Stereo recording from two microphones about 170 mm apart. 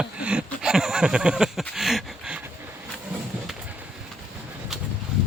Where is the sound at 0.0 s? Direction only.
5° right (ahead or behind).